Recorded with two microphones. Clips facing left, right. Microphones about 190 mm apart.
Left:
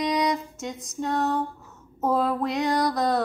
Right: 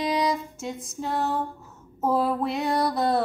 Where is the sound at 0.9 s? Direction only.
5° right (ahead or behind).